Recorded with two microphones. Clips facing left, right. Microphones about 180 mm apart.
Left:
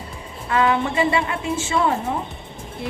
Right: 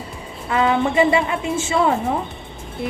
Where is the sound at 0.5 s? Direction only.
20° right (ahead or behind).